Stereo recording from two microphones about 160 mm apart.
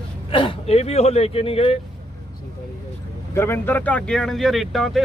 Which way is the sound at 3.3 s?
15° left (ahead or behind).